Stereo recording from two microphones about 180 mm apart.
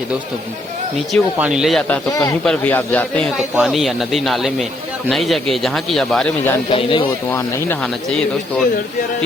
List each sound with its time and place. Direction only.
1.1 s a man's voice: 5° right (ahead or behind)
3.3 s a man's voice: centre (ahead or behind)
6.7 s speech: 30° left (ahead or behind)
7.3 s speech: 10° left (ahead or behind)